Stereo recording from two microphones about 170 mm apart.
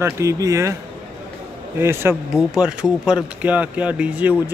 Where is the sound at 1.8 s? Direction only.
15° right (ahead or behind).